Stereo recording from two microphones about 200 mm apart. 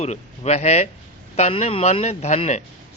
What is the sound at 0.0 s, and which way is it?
Speech, 35° left (ahead or behind).